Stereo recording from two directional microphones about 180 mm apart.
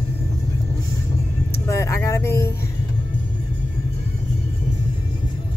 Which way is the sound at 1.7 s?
15° left (ahead or behind).